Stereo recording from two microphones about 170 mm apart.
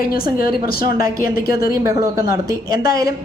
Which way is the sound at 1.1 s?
60° left (ahead or behind).